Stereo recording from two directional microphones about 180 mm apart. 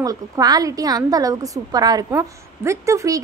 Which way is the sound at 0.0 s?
20° right (ahead or behind).